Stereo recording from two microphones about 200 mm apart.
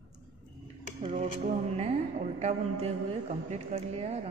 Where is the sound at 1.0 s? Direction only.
35° right (ahead or behind).